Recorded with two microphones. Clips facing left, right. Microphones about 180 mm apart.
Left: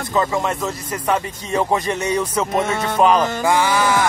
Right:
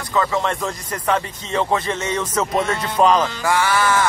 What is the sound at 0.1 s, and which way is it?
Speech, 20° left (ahead or behind).